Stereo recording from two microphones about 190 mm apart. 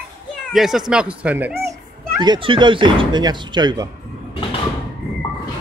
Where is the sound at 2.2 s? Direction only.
25° right (ahead or behind).